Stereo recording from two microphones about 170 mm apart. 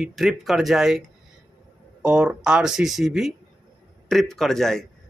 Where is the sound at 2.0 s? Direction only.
5° right (ahead or behind).